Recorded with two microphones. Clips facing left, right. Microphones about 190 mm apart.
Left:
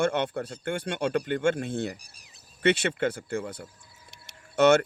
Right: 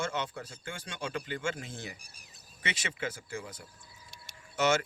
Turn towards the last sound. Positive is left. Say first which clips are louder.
# left 9 dB
turn(degrees=60)  # may be behind; listen again after turning